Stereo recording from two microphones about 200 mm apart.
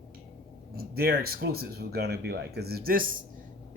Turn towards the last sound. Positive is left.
turn(degrees=-45)  # may be behind; listen again after turning